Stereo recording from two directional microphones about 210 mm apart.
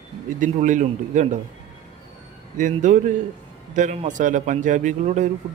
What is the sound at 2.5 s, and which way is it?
Speech, 35° right (ahead or behind).